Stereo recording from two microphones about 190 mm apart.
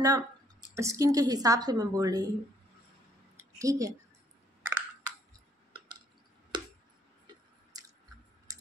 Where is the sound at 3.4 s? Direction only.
15° right (ahead or behind).